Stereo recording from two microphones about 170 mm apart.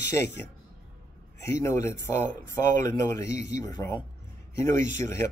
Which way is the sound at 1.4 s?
15° left (ahead or behind).